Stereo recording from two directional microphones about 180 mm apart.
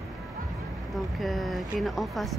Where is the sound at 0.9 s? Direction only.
Centre (ahead or behind).